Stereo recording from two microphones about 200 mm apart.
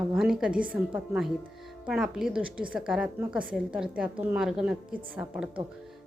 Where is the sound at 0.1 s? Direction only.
Centre (ahead or behind).